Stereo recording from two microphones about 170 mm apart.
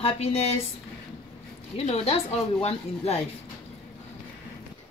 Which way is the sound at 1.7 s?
35° left (ahead or behind).